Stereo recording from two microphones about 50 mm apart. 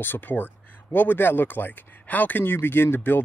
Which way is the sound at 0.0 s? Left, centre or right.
Left.